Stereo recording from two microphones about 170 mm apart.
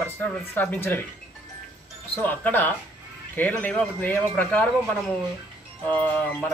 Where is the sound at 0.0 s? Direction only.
10° left (ahead or behind).